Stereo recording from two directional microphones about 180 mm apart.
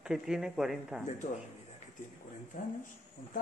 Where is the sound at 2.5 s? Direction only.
45° left (ahead or behind).